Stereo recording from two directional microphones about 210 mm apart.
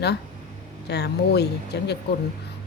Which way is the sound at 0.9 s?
50° left (ahead or behind).